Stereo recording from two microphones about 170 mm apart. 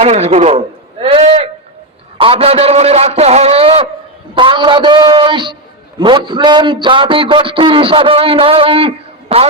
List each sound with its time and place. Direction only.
0.0 s a man's voice: 40° right (ahead or behind)